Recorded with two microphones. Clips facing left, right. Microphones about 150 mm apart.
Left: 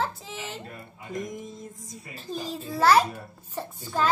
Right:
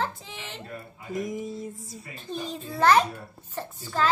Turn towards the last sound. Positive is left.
turn(degrees=10)  # may be behind; listen again after turning